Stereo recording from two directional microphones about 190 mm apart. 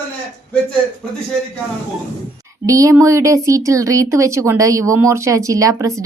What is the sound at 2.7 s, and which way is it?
Speech, 15° right (ahead or behind).